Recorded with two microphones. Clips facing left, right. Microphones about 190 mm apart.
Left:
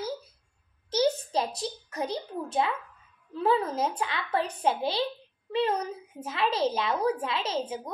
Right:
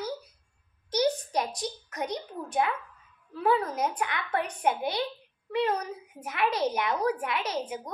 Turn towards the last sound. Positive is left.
turn(degrees=25)  # may be behind; listen again after turning